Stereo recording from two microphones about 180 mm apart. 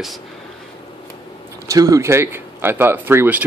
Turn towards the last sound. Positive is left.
turn(degrees=-10)  # may be behind; listen again after turning